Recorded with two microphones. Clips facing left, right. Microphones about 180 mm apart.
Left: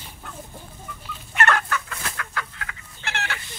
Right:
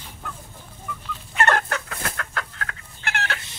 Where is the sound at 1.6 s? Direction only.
60° right (ahead or behind).